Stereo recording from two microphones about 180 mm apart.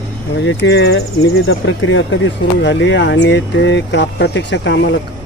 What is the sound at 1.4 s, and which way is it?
Speech, 90° left.